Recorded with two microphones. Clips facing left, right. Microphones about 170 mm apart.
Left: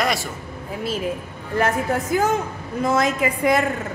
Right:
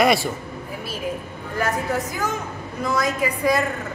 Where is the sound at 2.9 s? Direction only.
25° left (ahead or behind).